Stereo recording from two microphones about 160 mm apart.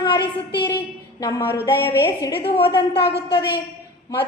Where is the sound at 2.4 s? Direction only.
35° left (ahead or behind).